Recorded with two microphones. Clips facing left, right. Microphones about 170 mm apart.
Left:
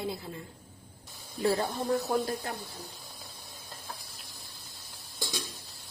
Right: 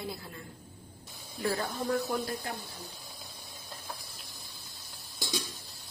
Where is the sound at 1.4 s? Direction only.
25° left (ahead or behind).